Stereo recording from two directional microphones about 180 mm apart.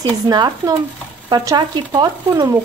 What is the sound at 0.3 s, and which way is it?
Speech, 25° right (ahead or behind).